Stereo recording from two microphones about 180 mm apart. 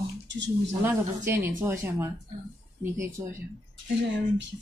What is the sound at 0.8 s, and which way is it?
Speech, 10° right (ahead or behind).